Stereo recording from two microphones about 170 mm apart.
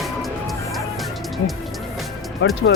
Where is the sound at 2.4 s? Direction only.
90° left.